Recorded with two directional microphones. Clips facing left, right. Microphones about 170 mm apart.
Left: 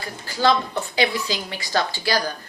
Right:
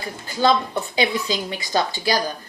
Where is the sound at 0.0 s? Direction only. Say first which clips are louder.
Right 1 dB; 20° right (ahead or behind).